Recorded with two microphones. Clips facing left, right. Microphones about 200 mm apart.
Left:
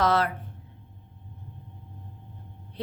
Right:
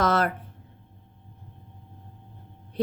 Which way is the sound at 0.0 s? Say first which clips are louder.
Even; 45° right (ahead or behind).